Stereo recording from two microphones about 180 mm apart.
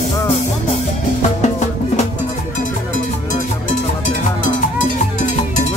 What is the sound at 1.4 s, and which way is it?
Music, 40° left (ahead or behind).